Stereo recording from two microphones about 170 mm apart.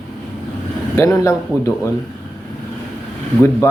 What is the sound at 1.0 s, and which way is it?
Speech, 20° left (ahead or behind).